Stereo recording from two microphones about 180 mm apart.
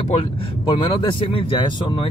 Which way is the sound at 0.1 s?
30° left (ahead or behind).